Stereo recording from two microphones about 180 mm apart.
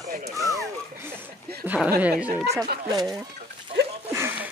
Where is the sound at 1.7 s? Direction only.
10° right (ahead or behind).